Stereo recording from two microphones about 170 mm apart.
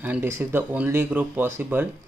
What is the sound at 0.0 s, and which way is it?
Speech, 10° right (ahead or behind).